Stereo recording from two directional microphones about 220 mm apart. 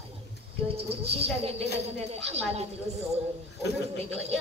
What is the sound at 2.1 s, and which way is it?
Speech, 30° right (ahead or behind).